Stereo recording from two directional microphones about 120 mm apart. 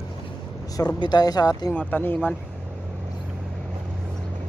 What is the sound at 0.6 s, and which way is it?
Speech, 30° left (ahead or behind).